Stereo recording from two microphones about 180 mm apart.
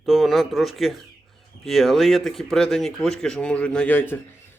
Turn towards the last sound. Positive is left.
turn(degrees=10)  # may be behind; listen again after turning